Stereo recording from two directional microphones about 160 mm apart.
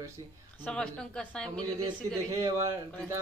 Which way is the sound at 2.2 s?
20° right (ahead or behind).